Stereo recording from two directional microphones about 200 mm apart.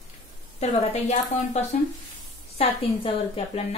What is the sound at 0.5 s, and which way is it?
A woman's voice, 35° left (ahead or behind).